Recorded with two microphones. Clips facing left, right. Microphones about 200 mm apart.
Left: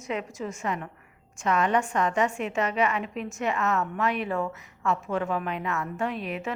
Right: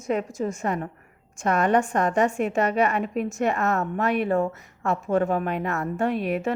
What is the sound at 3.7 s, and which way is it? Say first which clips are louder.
A woman's voice: right 3 dB; 45° right (ahead or behind).